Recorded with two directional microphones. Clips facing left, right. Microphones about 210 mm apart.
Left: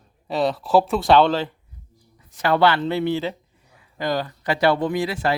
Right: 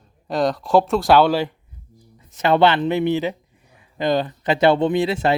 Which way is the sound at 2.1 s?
25° right (ahead or behind).